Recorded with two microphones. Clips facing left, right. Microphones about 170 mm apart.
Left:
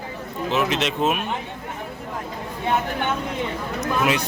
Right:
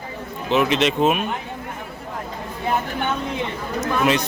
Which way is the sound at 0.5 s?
Centre (ahead or behind).